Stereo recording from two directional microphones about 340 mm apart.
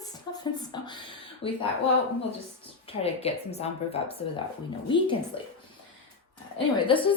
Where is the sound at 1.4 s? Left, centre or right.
Left.